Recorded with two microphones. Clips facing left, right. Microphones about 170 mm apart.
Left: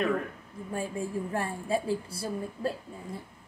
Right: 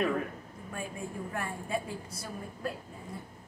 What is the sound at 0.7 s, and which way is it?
A woman's voice, 30° left (ahead or behind).